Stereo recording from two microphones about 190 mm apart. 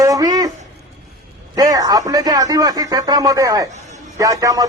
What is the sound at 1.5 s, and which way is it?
Speech, 20° right (ahead or behind).